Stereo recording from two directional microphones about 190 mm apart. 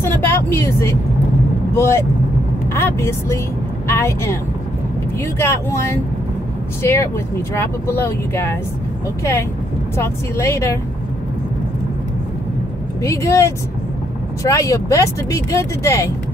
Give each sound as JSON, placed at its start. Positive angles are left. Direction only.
{"t": 0.0, "sound": "vehicle", "side_deg": 15}
{"t": 1.8, "sound": "speech", "side_deg": 15}
{"t": 5.4, "sound": "speech", "side_deg": 15}
{"t": 13.0, "sound": "speech", "side_deg": 15}